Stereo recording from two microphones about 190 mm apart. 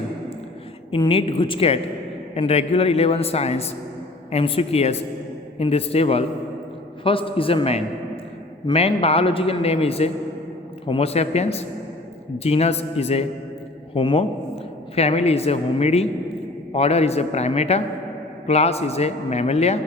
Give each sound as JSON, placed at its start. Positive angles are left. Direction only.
{"t": 0.9, "sound": "a woman's voice", "side_deg": 30}